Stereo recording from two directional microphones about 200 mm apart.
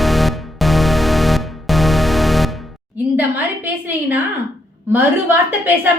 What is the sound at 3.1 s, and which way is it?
A woman's voice, 10° right (ahead or behind).